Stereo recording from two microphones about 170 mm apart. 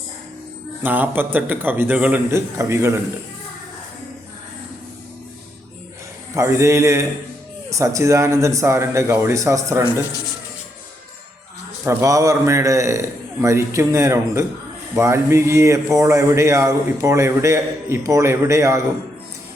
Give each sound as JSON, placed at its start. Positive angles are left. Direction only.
{"t": 0.8, "sound": "speech", "side_deg": -10}
{"t": 6.3, "sound": "speech", "side_deg": -15}
{"t": 11.9, "sound": "speech", "side_deg": -15}